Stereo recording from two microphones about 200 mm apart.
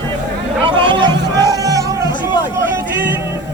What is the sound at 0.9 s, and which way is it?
Music, 25° right (ahead or behind).